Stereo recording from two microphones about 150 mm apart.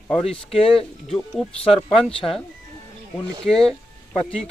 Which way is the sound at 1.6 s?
40° left (ahead or behind).